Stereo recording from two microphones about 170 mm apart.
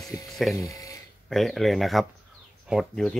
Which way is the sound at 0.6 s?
20° left (ahead or behind).